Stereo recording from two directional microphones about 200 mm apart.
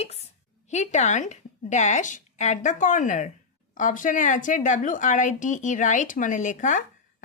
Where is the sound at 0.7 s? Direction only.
35° left (ahead or behind).